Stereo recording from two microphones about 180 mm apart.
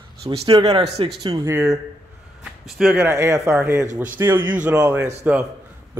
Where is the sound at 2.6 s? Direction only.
Centre (ahead or behind).